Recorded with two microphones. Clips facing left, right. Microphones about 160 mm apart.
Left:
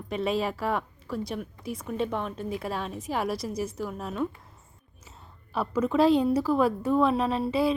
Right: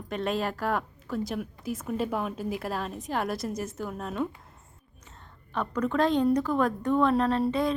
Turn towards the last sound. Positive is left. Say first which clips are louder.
# even
turn(degrees=5)  # may be behind; listen again after turning